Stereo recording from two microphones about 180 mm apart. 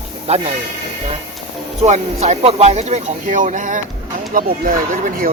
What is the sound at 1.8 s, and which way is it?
Speech, 40° right (ahead or behind).